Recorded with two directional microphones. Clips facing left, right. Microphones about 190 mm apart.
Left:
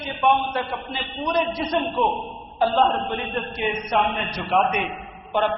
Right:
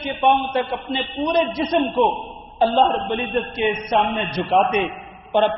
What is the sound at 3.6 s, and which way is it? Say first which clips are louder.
A man's voice: right 2 dB; 20° right (ahead or behind).